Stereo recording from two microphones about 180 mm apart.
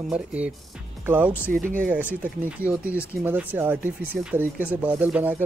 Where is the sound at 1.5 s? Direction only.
50° right (ahead or behind).